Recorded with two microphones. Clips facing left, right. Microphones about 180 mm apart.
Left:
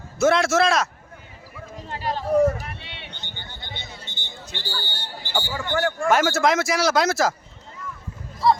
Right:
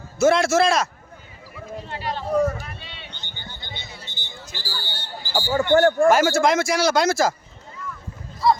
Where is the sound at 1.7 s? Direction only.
40° left (ahead or behind).